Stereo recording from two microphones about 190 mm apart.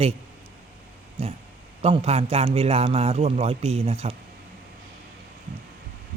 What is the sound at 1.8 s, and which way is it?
A man's voice, 35° right (ahead or behind).